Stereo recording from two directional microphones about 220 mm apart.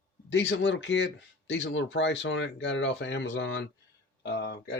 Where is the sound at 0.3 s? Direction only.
55° left (ahead or behind).